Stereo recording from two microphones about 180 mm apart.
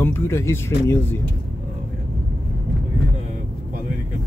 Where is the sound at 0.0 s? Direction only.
15° left (ahead or behind).